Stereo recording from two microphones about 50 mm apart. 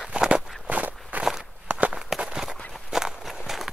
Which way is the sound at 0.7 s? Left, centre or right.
Right.